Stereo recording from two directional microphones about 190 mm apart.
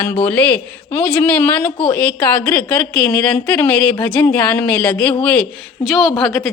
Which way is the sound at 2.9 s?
5° left (ahead or behind).